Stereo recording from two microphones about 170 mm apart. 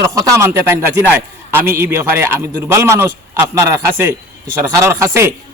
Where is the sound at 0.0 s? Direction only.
20° right (ahead or behind).